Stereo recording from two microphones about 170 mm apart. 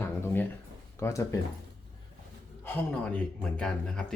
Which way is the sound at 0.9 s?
15° left (ahead or behind).